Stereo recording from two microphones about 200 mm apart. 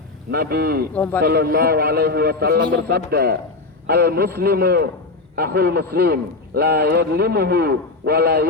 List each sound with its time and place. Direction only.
0.3 s a man's voice: 50° right (ahead or behind)
0.9 s a man's voice: 5° left (ahead or behind)
1.2 s a man's voice: 50° right (ahead or behind)